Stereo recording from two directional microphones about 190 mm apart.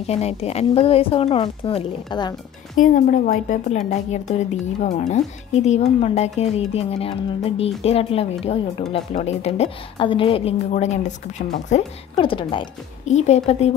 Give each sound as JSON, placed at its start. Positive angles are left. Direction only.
{"t": 0.0, "sound": "a woman's voice", "side_deg": 35}
{"t": 2.8, "sound": "a woman's voice", "side_deg": 45}
{"t": 12.2, "sound": "a woman's voice", "side_deg": 25}